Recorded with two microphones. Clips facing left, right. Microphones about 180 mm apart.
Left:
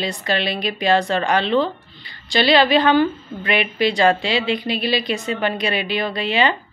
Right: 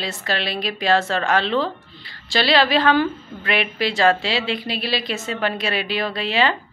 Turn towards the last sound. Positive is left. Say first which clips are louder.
# left 1 dB
turn(degrees=0)  # may be behind; listen again after turning